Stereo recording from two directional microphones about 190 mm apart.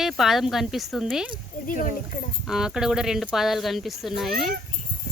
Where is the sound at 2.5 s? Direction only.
5° right (ahead or behind).